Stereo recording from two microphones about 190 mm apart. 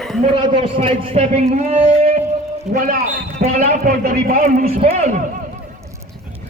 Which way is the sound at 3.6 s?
35° right (ahead or behind).